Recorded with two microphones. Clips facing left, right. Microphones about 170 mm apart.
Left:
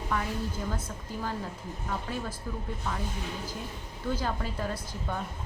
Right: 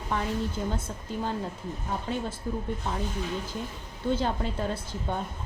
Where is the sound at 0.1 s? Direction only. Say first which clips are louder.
Right 3 dB; 25° right (ahead or behind).